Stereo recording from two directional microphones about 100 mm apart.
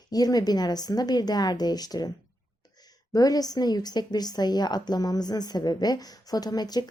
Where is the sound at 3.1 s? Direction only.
40° left (ahead or behind).